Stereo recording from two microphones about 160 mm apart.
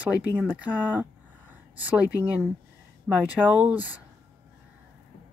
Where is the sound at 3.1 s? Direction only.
10° right (ahead or behind).